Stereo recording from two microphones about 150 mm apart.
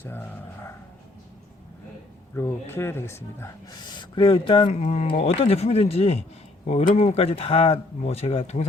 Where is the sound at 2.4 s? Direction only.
15° left (ahead or behind).